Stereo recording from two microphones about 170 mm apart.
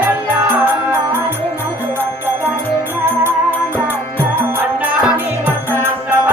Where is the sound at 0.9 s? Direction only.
15° right (ahead or behind).